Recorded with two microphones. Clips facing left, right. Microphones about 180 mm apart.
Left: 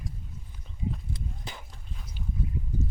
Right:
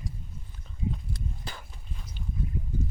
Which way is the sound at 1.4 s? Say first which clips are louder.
Even; 20° left (ahead or behind).